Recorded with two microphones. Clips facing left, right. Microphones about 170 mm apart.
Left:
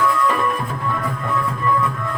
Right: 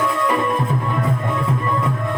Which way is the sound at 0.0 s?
20° right (ahead or behind).